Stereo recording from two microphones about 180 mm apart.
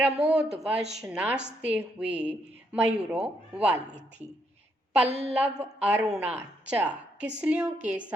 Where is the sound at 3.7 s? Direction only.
40° right (ahead or behind).